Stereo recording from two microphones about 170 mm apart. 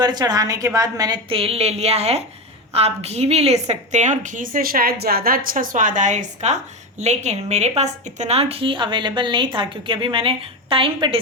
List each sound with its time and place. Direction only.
0.0 s a woman's voice: 25° right (ahead or behind)